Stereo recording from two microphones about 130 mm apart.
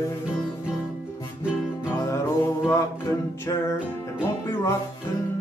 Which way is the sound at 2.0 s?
25° left (ahead or behind).